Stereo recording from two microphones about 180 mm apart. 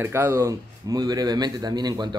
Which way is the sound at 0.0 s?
15° right (ahead or behind).